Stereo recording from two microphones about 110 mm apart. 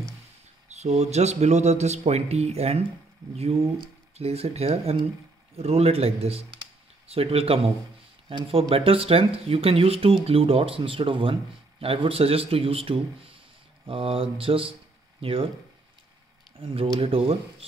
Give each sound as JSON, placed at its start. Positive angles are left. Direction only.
{"t": 0.7, "sound": "speech", "side_deg": -90}
{"t": 4.2, "sound": "speech", "side_deg": -65}
{"t": 16.5, "sound": "speech", "side_deg": -55}